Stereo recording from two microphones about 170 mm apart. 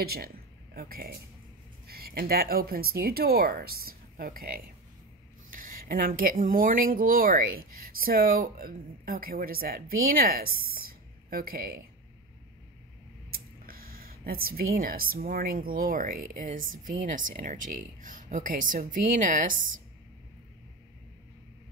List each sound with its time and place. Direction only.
0.0 s speech: 65° right (ahead or behind)
13.3 s speech: 60° right (ahead or behind)